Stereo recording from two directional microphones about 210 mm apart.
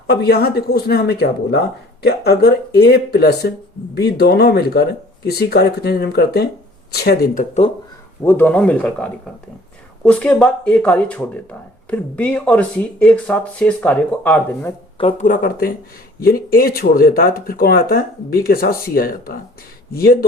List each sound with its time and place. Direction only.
0.1 s speech: 50° left (ahead or behind)
8.2 s speech: 10° left (ahead or behind)
14.9 s speech: 30° left (ahead or behind)